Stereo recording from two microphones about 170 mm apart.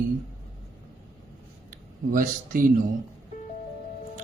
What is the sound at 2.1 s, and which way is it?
Speech, 55° right (ahead or behind).